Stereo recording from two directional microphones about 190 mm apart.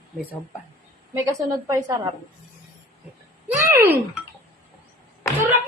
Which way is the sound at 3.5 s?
10° right (ahead or behind).